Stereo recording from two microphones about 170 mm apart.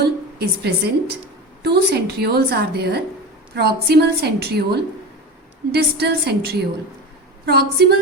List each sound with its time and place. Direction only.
0.0 s a woman's voice: 70° right (ahead or behind)